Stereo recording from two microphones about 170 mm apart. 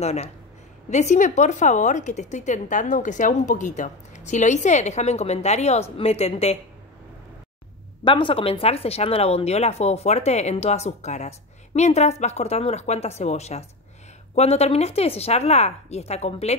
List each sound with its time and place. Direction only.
0.0 s a woman's voice: 40° left (ahead or behind)
8.0 s speech: 30° left (ahead or behind)